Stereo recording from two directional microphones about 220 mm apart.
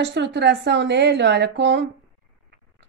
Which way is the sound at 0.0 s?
50° right (ahead or behind).